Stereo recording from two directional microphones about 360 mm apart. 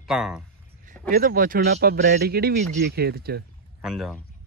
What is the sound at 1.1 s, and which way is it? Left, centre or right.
Speech, right.